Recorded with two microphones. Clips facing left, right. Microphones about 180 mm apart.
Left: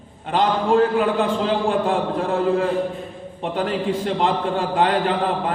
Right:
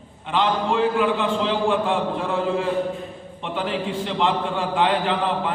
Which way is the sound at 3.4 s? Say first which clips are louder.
Left 3 dB; 45° left (ahead or behind).